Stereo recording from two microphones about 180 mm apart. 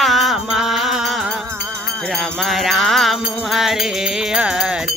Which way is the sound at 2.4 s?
Centre (ahead or behind).